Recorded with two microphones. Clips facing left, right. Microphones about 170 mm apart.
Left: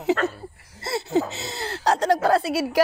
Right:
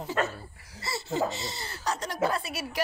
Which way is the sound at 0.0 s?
75° left (ahead or behind).